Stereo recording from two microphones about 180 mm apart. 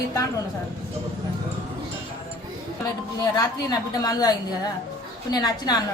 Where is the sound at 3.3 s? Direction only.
20° left (ahead or behind).